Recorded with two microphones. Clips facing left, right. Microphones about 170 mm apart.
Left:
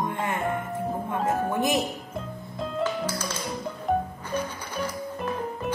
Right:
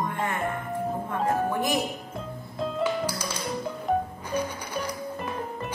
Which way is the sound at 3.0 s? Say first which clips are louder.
Even; 10° right (ahead or behind).